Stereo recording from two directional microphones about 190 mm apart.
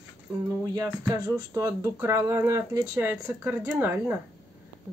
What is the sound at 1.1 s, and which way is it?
Speech, 15° right (ahead or behind).